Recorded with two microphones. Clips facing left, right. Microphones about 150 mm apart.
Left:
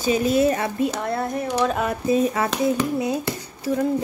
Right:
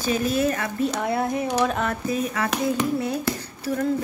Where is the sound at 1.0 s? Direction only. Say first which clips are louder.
Right 1 dB; 5° right (ahead or behind).